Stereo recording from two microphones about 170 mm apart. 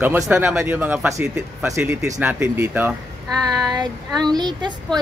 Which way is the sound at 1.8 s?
5° right (ahead or behind).